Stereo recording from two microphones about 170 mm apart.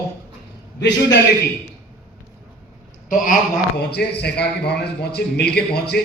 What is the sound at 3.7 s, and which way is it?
A man's voice, 70° left (ahead or behind).